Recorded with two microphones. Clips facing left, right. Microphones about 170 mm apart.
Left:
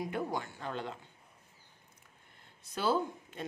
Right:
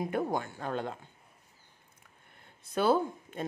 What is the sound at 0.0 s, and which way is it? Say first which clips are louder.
Speech: right 4 dB; 50° right (ahead or behind).